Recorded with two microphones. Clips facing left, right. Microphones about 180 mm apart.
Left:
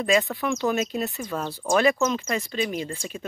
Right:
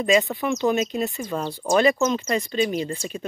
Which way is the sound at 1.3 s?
15° right (ahead or behind).